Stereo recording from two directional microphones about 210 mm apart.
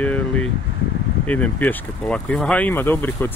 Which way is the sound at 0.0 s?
5° left (ahead or behind).